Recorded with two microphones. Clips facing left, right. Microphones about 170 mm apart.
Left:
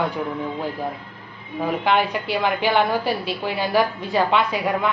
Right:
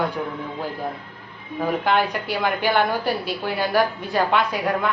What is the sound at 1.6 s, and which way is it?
A woman's voice, 5° left (ahead or behind).